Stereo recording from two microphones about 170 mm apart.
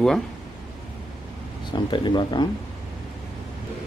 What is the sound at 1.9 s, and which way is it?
Speech, 25° left (ahead or behind).